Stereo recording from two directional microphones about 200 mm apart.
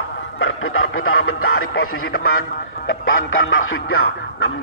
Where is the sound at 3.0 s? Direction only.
85° left.